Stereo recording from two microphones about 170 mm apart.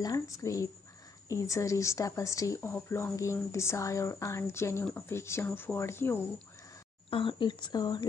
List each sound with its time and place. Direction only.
0.0 s speech: 20° left (ahead or behind)
7.1 s speech: 30° left (ahead or behind)